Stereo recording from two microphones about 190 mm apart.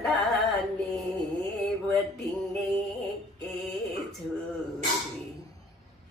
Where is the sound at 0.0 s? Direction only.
Centre (ahead or behind).